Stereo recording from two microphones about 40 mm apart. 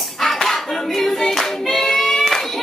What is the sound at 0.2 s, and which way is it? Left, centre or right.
Music, centre.